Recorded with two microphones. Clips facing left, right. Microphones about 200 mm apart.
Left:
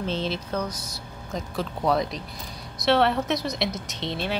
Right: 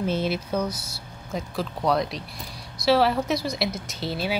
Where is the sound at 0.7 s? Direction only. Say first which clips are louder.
Right 2 dB; 15° left (ahead or behind).